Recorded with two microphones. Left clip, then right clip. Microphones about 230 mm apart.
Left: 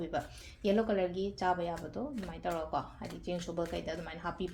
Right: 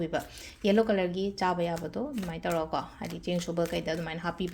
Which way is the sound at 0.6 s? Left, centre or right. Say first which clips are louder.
Right 5 dB; right.